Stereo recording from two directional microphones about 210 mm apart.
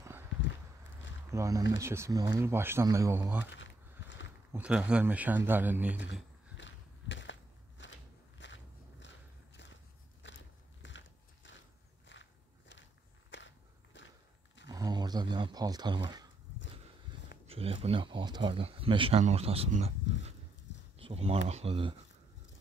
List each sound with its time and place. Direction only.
0.0 s walk: 10° right (ahead or behind)
1.3 s speech: 15° right (ahead or behind)
3.5 s a sound: 60° left (ahead or behind)
4.5 s speech: 5° right (ahead or behind)
6.5 s a sound: 60° left (ahead or behind)
8.4 s biting: 60° left (ahead or behind)
10.2 s biting: 60° left (ahead or behind)
12.1 s walk: 60° left (ahead or behind)
13.9 s a sound: 60° left (ahead or behind)
14.7 s a sound: 20° right (ahead or behind)
17.5 s speech: 25° right (ahead or behind)
21.0 s speech: 30° right (ahead or behind)